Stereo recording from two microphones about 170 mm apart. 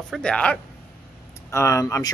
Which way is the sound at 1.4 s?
15° left (ahead or behind).